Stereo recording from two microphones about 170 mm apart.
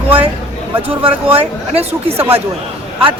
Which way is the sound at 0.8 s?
30° right (ahead or behind).